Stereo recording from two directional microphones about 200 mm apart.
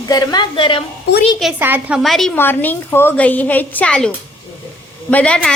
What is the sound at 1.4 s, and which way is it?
A woman's voice, 10° right (ahead or behind).